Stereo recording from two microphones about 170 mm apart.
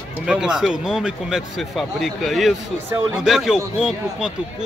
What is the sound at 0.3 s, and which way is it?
Speech, 5° right (ahead or behind).